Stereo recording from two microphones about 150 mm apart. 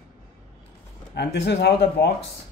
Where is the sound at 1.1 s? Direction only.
90° left.